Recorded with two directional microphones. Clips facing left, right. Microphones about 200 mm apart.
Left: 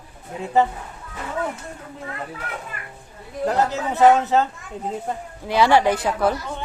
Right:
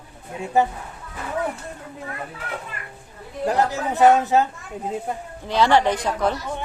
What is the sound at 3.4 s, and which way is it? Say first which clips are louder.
Speech: even; 15° right (ahead or behind).